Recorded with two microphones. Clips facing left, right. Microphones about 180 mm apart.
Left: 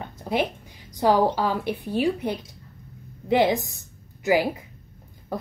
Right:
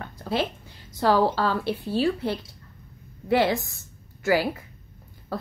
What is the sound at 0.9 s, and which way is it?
A woman's voice, 15° left (ahead or behind).